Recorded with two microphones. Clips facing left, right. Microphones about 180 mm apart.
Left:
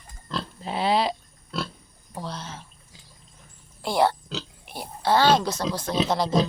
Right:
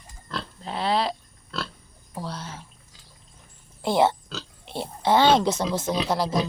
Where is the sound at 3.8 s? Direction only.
20° right (ahead or behind).